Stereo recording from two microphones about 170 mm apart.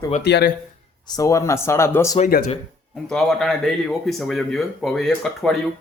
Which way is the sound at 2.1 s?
50° left (ahead or behind).